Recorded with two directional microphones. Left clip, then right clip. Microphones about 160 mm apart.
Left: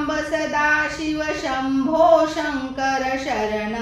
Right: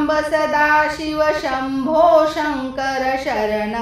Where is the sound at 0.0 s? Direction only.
30° right (ahead or behind).